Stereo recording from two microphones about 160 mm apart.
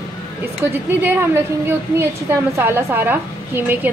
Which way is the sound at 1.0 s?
15° right (ahead or behind).